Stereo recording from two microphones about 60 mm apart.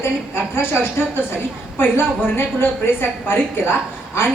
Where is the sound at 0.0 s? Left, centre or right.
Left.